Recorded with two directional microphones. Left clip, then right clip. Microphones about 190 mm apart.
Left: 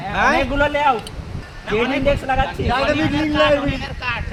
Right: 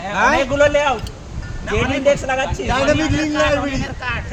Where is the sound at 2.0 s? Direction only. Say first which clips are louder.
Right 2 dB; 30° right (ahead or behind).